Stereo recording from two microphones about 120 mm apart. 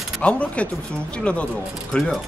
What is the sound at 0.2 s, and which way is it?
Speech, 10° left (ahead or behind).